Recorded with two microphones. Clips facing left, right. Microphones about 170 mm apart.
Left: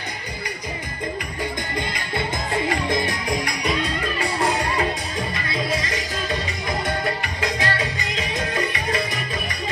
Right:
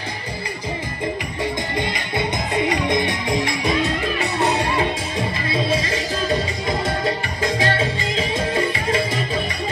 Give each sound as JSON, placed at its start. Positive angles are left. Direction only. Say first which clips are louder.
{"t": 1.8, "sound": "music", "louder": "right 2 dB", "side_deg": -20}
{"t": 7.5, "sound": "music", "louder": "right 4 dB", "side_deg": -30}